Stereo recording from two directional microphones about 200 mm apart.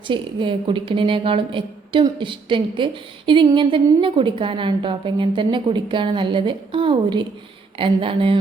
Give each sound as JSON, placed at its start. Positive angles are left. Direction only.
{"t": 0.1, "sound": "a woman's voice", "side_deg": -25}